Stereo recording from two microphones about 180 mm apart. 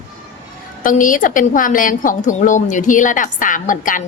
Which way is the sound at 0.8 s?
50° left (ahead or behind).